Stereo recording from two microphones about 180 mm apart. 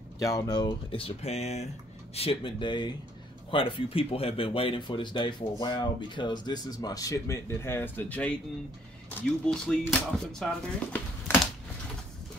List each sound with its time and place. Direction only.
0.2 s speech: 20° left (ahead or behind)
9.5 s speech: 5° left (ahead or behind)